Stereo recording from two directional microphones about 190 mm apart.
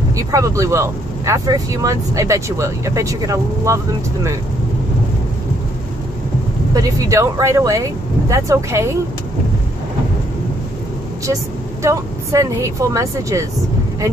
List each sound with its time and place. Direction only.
0.1 s speech: 15° right (ahead or behind)
6.7 s speech: 20° right (ahead or behind)
11.8 s speech: 15° right (ahead or behind)